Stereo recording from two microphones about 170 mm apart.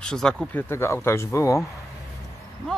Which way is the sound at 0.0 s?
5° left (ahead or behind).